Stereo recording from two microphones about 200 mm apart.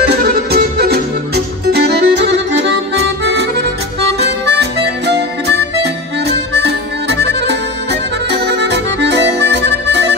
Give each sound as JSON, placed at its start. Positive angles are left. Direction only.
{"t": 0.1, "sound": "music", "side_deg": -50}
{"t": 6.2, "sound": "harmonica", "side_deg": -60}